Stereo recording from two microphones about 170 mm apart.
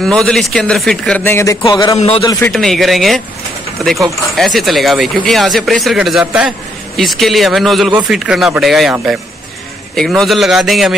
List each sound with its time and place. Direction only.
0.0 s speech: 5° left (ahead or behind); by 2.0 s 20° left (ahead or behind)
2.0 s a man's voice: 35° left (ahead or behind)
2.5 s speech: centre (ahead or behind)
9.9 s speech: 5° left (ahead or behind)